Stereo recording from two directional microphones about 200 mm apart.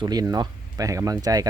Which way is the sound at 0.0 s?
20° right (ahead or behind).